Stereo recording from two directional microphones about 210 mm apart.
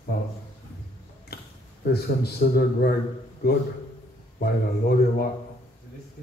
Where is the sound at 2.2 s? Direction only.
50° left (ahead or behind).